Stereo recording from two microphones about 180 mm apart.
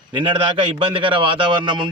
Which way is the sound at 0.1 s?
30° right (ahead or behind).